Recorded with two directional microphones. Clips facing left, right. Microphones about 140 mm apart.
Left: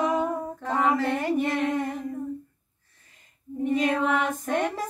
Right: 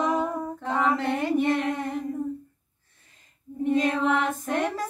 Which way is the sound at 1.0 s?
Centre (ahead or behind).